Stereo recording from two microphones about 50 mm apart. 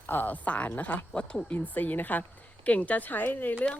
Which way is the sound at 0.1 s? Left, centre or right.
Left.